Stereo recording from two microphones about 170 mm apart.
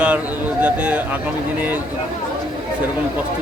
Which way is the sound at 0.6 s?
10° right (ahead or behind).